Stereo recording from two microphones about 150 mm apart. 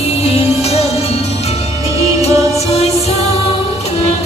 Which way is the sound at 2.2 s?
45° left (ahead or behind).